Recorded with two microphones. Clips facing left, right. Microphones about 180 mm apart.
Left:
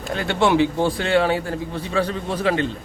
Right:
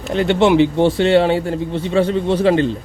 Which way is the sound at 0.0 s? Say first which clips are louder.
Right 6 dB; 25° right (ahead or behind).